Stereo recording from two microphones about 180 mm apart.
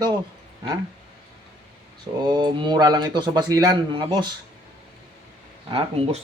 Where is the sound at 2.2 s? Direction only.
25° right (ahead or behind).